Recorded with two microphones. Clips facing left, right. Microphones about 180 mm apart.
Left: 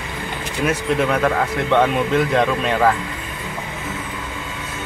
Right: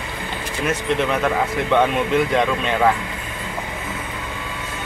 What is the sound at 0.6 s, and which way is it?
Speech, centre (ahead or behind).